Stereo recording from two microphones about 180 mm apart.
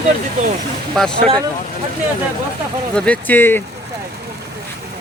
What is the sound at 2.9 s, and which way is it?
Speech, 10° left (ahead or behind).